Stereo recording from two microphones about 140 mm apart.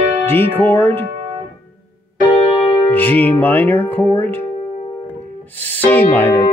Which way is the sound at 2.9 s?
10° left (ahead or behind).